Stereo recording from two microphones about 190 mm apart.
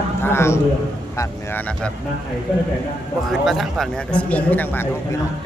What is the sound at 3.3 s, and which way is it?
Speech, centre (ahead or behind).